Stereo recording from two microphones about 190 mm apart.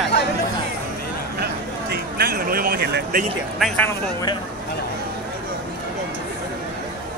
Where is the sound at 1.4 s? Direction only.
55° right (ahead or behind).